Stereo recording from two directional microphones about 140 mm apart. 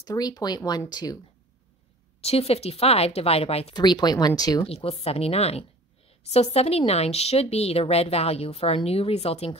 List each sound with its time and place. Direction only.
0.0 s speech: 30° left (ahead or behind)
2.2 s a woman's voice: 45° left (ahead or behind)
3.7 s speech: 30° left (ahead or behind)
4.6 s a woman's voice: 45° left (ahead or behind)